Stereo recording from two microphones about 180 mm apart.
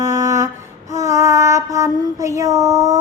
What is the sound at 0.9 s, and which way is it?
Child singing, 40° left (ahead or behind).